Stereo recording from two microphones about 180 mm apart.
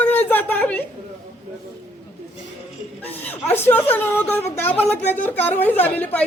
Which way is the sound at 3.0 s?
10° left (ahead or behind).